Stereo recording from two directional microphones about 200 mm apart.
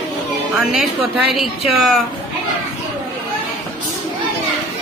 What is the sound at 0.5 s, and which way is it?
A woman's voice, centre (ahead or behind).